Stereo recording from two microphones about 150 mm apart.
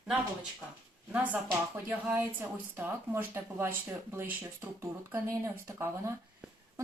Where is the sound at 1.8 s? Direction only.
10° right (ahead or behind).